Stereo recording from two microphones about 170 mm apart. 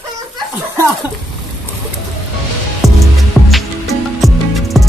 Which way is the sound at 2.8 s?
Centre (ahead or behind).